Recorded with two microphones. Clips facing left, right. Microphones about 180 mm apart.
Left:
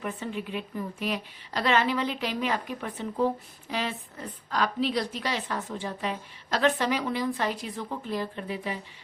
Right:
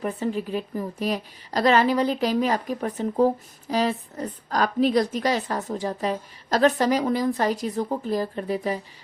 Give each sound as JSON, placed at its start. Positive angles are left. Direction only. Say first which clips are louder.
{"t": 0.0, "sound": "a woman's voice", "louder": "right 7 dB", "side_deg": -35}